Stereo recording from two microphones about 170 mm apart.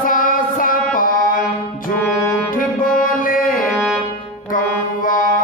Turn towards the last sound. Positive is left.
turn(degrees=50)  # may be behind; listen again after turning